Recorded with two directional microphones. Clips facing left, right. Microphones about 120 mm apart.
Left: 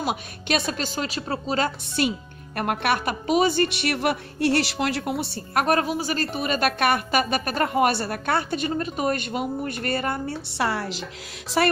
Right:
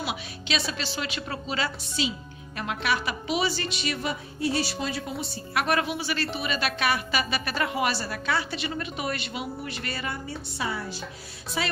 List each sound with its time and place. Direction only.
0.0 s speech: 50° left (ahead or behind)
2.0 s a woman's voice: 55° left (ahead or behind)
5.5 s speech: 45° left (ahead or behind)
10.6 s a woman's voice: 75° left (ahead or behind)
11.5 s a woman's voice: 90° left